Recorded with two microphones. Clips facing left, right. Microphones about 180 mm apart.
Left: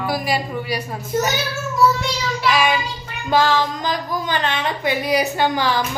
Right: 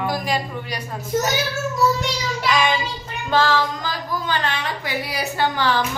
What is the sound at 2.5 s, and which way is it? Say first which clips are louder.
Speech: even; 5° left (ahead or behind).